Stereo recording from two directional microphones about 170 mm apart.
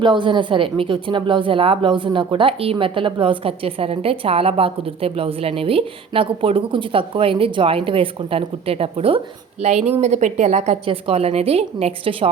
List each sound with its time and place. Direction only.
0.0 s speech: 30° right (ahead or behind)